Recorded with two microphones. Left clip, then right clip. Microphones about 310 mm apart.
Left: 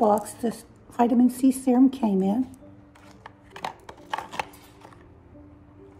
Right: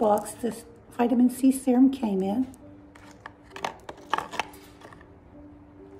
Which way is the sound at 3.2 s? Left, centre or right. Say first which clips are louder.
Right 2 dB; centre.